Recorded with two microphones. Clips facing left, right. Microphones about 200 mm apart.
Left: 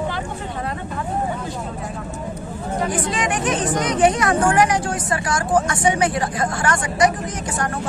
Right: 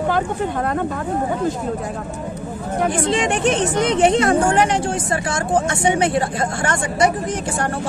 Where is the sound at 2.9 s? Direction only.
25° right (ahead or behind).